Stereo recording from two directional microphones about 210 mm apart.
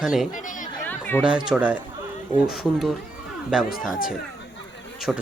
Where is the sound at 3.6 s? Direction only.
40° left (ahead or behind).